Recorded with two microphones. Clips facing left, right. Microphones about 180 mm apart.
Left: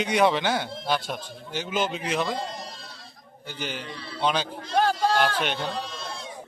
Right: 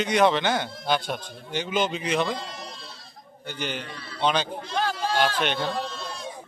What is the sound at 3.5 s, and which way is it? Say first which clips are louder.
Speech: right 2 dB; 5° left (ahead or behind).